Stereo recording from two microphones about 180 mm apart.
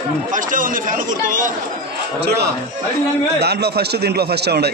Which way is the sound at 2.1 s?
65° right (ahead or behind).